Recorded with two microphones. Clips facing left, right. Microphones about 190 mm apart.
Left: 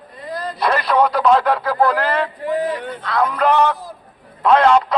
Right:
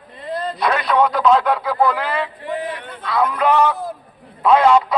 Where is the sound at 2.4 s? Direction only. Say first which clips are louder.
Left 5 dB; 45° left (ahead or behind).